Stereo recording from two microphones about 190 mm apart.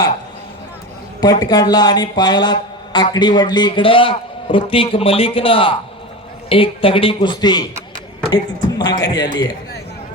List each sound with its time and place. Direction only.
1.2 s speech: 20° left (ahead or behind)